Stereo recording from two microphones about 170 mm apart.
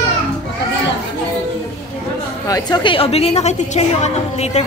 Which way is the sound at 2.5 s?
25° left (ahead or behind).